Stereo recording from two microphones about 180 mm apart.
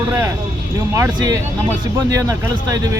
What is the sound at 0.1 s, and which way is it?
Speech, 15° right (ahead or behind).